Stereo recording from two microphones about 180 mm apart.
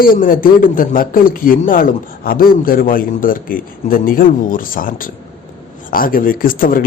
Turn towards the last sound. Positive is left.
turn(degrees=50)  # may be behind; listen again after turning